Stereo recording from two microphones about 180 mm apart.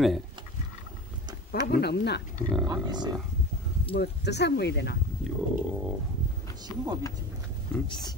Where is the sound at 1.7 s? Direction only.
65° left (ahead or behind).